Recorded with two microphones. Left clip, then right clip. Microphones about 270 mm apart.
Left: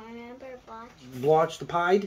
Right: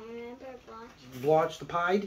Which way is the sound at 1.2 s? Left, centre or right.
Left.